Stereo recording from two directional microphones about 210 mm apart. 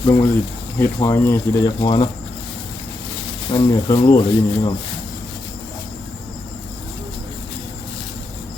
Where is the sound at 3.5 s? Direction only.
20° left (ahead or behind).